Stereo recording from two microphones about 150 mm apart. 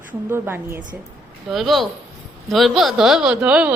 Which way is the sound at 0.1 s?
15° right (ahead or behind).